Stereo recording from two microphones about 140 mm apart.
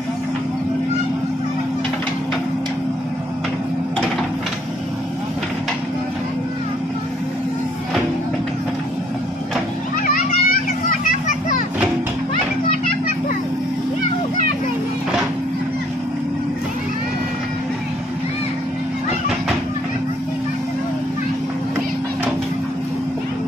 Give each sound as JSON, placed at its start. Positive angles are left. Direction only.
{"t": 10.0, "sound": "children playing", "side_deg": 85}